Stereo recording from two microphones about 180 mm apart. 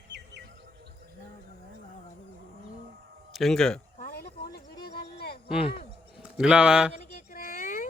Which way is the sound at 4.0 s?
55° left (ahead or behind).